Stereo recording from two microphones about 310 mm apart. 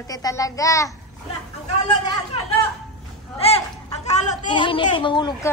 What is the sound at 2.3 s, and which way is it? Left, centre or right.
Speech, centre.